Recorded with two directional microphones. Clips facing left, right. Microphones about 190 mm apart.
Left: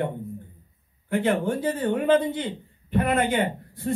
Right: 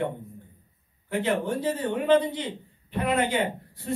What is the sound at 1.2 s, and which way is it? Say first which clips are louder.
Speech: left 2 dB; 50° left (ahead or behind).